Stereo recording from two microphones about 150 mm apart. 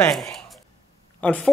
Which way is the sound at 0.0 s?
Centre (ahead or behind).